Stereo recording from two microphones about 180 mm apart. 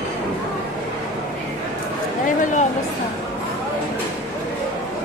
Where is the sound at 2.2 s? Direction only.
45° left (ahead or behind).